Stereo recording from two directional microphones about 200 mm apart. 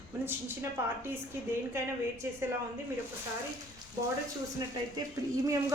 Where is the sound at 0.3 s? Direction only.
10° right (ahead or behind).